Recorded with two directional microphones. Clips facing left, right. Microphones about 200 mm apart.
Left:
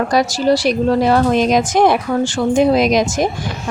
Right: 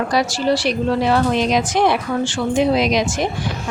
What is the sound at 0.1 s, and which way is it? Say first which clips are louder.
Speech: left 4 dB; 45° left (ahead or behind).